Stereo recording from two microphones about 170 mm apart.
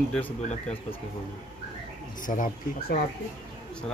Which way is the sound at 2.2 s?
50° left (ahead or behind).